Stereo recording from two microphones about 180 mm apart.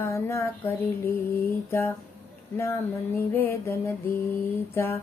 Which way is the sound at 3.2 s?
15° left (ahead or behind).